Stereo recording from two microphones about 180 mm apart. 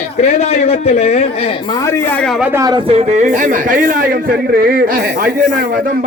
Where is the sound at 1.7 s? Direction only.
20° left (ahead or behind); by 2.6 s 5° right (ahead or behind).